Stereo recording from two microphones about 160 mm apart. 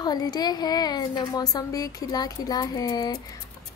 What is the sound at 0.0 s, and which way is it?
A woman's voice, 25° left (ahead or behind).